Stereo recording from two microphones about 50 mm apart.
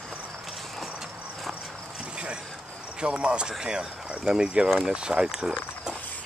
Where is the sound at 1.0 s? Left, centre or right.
Centre.